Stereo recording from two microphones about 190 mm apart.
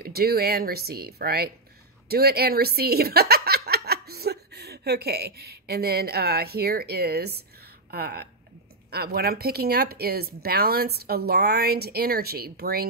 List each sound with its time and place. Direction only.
0.0 s speech: 55° right (ahead or behind)